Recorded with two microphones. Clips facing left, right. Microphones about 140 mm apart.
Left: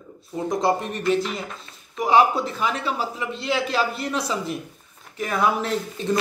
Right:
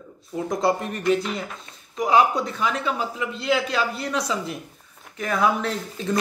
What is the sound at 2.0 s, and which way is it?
Speech, centre (ahead or behind).